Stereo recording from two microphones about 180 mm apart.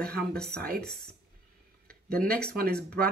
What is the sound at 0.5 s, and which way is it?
Speech, 55° right (ahead or behind).